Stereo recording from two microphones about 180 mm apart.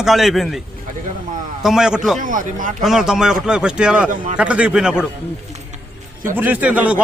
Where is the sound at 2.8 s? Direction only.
Centre (ahead or behind).